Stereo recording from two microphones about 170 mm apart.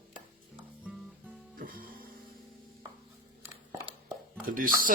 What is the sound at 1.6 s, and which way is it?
Music, 55° right (ahead or behind).